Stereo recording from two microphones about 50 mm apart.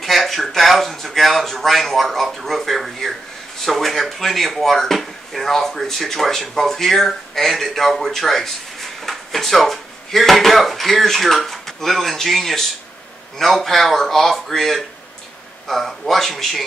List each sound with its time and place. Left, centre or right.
0.0 s speech: centre
13.7 s speech: centre